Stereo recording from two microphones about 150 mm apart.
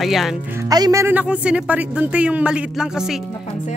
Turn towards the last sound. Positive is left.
turn(degrees=-5)  # may be behind; listen again after turning